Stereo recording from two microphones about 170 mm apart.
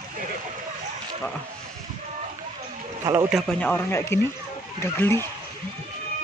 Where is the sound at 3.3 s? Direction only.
Centre (ahead or behind).